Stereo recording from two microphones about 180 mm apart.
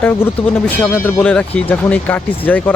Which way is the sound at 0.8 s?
10° left (ahead or behind).